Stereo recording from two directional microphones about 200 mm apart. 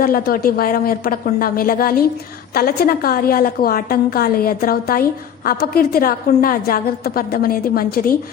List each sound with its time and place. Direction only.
0.0 s a woman's voice: 45° left (ahead or behind)